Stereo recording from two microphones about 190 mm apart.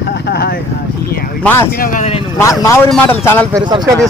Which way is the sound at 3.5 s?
20° right (ahead or behind).